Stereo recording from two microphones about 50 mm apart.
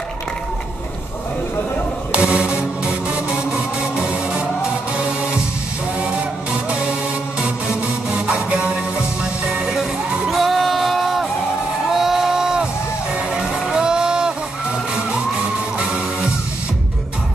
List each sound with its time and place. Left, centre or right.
2.1 s music: right
9.8 s music: centre
11.9 s a sound: centre